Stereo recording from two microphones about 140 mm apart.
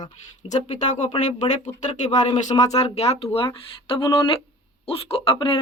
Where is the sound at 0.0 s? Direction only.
60° left (ahead or behind).